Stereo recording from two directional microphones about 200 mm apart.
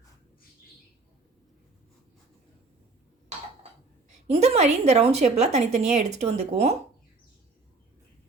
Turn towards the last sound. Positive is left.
turn(degrees=-30)  # may be behind; listen again after turning